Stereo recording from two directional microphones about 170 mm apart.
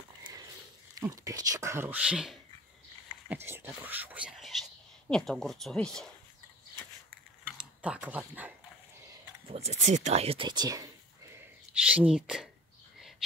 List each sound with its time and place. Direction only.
0.9 s speech: 20° right (ahead or behind); by 6.0 s 5° left (ahead or behind)
7.5 s speech: 5° right (ahead or behind)
9.5 s speech: 40° right (ahead or behind); by 10.9 s 20° right (ahead or behind)
11.3 s a sound: 5° right (ahead or behind)